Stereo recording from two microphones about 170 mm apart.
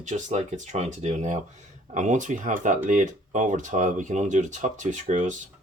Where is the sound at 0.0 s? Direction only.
45° right (ahead or behind).